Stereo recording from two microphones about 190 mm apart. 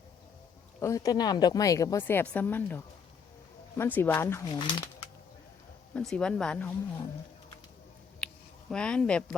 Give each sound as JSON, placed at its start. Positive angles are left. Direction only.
{"t": 0.8, "sound": "a woman's voice", "side_deg": 15}
{"t": 4.4, "sound": "speech", "side_deg": 25}
{"t": 5.9, "sound": "speech", "side_deg": 5}
{"t": 8.2, "sound": "a sound", "side_deg": 5}
{"t": 8.7, "sound": "speech", "side_deg": 5}